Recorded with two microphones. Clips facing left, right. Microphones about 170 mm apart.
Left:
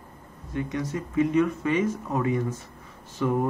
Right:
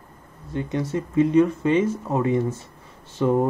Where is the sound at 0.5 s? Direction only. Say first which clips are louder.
Right 3 dB; 30° right (ahead or behind).